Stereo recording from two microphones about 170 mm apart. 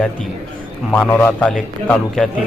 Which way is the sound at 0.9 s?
5° left (ahead or behind).